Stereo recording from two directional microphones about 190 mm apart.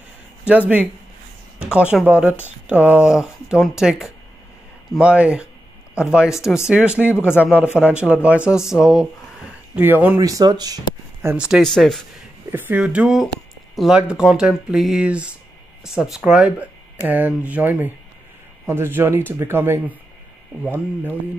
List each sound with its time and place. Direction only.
0.5 s speech: 5° right (ahead or behind)
11.2 s speech: 5° right (ahead or behind)
12.4 s speech: 10° right (ahead or behind)